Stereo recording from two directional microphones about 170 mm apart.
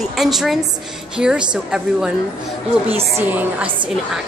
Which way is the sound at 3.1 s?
10° right (ahead or behind).